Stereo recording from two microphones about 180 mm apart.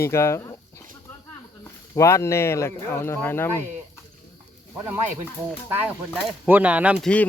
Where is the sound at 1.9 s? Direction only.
15° left (ahead or behind).